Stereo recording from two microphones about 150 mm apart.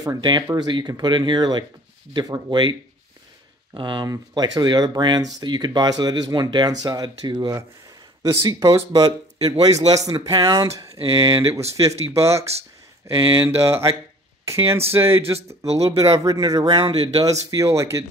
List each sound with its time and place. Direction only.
0.0 s speech: 25° right (ahead or behind)
3.7 s speech: 30° right (ahead or behind)
9.8 s speech: 50° right (ahead or behind)
10.0 s speech: 25° right (ahead or behind)
15.3 s speech: 45° right (ahead or behind)
15.8 s speech: 25° right (ahead or behind)
16.7 s speech: 35° right (ahead or behind)
17.2 s speech: 20° right (ahead or behind)